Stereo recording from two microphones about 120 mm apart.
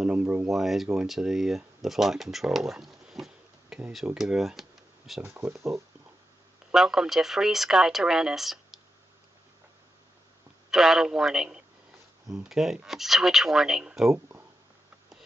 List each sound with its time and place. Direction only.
0.0 s speech: 10° right (ahead or behind)
5.2 s speech: 20° right (ahead or behind)
6.7 s speech: 5° right (ahead or behind)
10.7 s speech: centre (ahead or behind)